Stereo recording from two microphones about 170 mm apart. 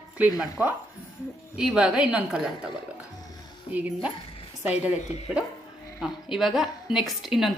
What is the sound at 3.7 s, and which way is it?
A woman's voice, 10° right (ahead or behind).